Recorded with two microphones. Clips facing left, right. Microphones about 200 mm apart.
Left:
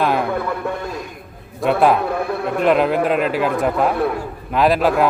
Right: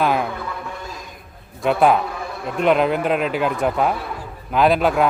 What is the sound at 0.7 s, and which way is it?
Speech, 60° left (ahead or behind).